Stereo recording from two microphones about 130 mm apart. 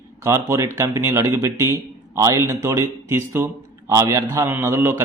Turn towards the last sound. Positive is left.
turn(degrees=-20)  # may be behind; listen again after turning